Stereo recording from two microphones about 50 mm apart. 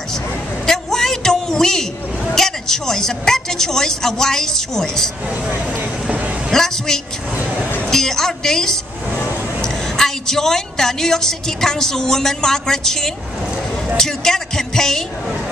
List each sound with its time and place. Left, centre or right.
0.7 s a sound: centre
2.3 s a woman's voice: centre
6.0 s a sound: right
6.5 s a woman's voice: centre
7.9 s music: centre
9.6 s a woman's voice: centre